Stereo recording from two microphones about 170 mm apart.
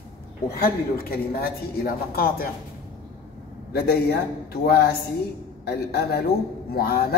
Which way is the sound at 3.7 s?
65° left (ahead or behind).